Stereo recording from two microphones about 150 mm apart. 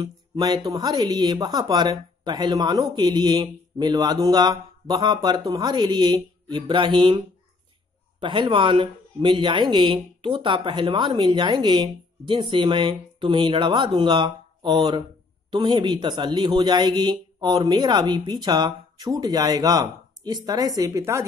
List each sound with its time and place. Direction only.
0.0 s speech: 25° right (ahead or behind)